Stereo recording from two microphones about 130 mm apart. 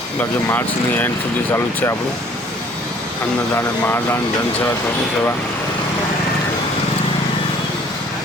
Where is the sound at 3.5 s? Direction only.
20° left (ahead or behind).